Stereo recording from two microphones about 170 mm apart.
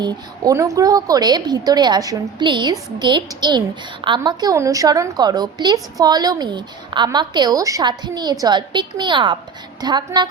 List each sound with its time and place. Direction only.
0.0 s a woman's voice: 25° right (ahead or behind)